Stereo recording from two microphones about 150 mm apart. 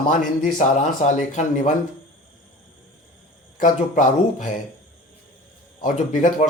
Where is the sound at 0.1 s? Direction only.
55° left (ahead or behind).